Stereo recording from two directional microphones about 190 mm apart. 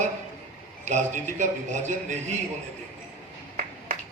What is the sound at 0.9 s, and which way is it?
A man's voice, 40° right (ahead or behind).